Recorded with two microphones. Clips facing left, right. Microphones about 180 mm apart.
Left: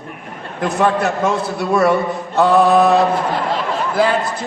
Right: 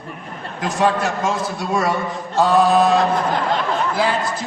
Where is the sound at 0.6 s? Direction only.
60° left (ahead or behind).